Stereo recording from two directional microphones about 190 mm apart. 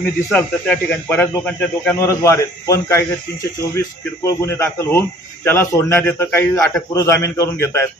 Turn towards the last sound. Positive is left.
turn(degrees=15)  # may be behind; listen again after turning